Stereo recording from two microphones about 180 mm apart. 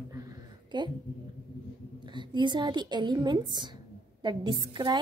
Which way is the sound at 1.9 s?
25° right (ahead or behind).